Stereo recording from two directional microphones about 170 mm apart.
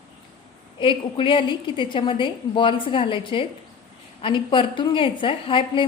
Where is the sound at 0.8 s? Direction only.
30° left (ahead or behind).